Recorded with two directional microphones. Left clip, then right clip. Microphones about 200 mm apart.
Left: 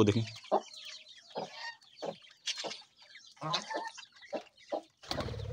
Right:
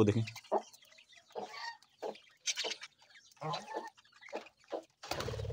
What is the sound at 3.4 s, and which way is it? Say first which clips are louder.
Chicken: left 4 dB; 30° right (ahead or behind).